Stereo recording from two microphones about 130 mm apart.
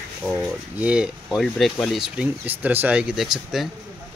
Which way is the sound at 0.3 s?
10° right (ahead or behind).